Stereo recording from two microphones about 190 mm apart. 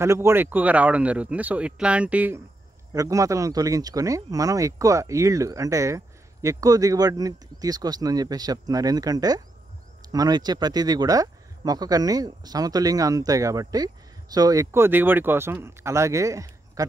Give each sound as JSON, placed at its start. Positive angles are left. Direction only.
{"t": 0.0, "sound": "speech", "side_deg": -15}